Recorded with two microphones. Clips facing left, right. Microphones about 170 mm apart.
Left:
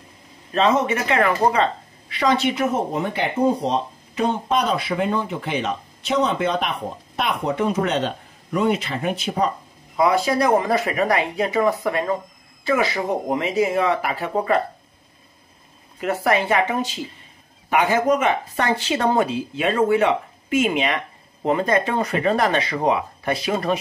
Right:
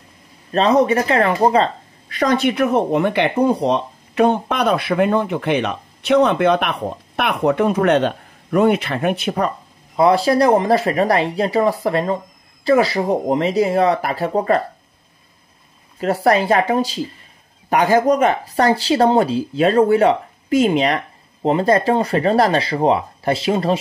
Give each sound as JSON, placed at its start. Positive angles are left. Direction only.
{"t": 0.5, "sound": "speech", "side_deg": -35}
{"t": 9.9, "sound": "speech", "side_deg": -35}
{"t": 16.0, "sound": "speech", "side_deg": -35}